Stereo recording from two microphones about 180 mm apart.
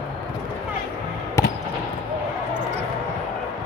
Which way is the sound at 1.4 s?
15° left (ahead or behind).